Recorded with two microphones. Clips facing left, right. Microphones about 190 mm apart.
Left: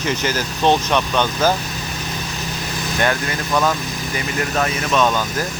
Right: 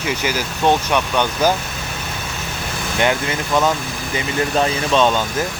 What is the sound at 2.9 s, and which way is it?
Speech, 20° right (ahead or behind).